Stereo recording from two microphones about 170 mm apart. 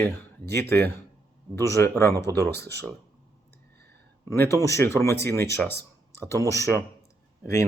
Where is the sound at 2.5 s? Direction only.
75° right (ahead or behind).